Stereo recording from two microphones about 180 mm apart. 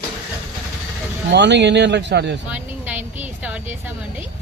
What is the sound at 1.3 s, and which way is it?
A man's voice, 75° right (ahead or behind).